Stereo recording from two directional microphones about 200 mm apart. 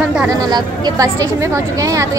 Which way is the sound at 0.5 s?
20° right (ahead or behind).